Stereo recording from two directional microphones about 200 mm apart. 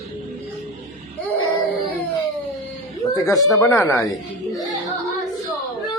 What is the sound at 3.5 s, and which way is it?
Speech, 15° left (ahead or behind).